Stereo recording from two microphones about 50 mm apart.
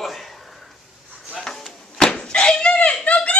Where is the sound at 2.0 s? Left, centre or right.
Centre.